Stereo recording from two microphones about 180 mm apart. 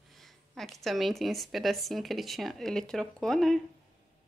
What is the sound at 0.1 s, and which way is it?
Speech, centre (ahead or behind).